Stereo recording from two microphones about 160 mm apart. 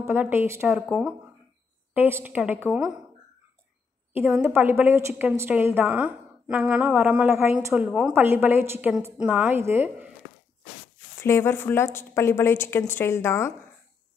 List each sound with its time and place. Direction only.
0.0 s a woman's voice: 15° right (ahead or behind)
4.1 s a woman's voice: 15° right (ahead or behind)
11.1 s a woman's voice: 15° left (ahead or behind)